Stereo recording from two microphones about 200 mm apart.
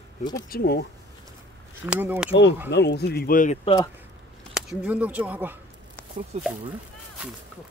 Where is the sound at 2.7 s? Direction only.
55° left (ahead or behind).